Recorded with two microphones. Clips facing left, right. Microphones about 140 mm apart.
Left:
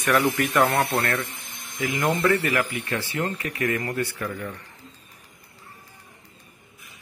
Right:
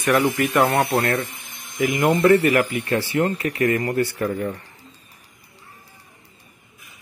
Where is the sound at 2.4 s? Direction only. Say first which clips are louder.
Right 6 dB; 25° right (ahead or behind).